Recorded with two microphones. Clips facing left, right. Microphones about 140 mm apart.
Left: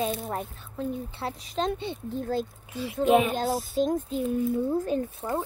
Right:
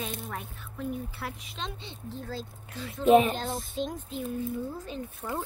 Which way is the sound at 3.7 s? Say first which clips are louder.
Left 8 dB; 45° left (ahead or behind).